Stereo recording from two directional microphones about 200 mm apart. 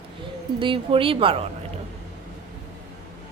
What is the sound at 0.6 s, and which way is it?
Speech, 25° right (ahead or behind).